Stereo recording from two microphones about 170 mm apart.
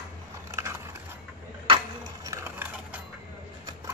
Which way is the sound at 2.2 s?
15° right (ahead or behind).